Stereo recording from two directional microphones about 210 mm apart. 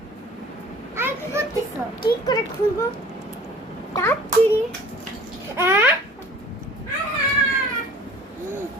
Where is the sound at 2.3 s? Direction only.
20° left (ahead or behind).